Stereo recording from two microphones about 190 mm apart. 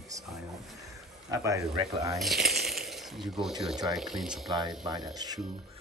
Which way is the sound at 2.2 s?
Centre (ahead or behind).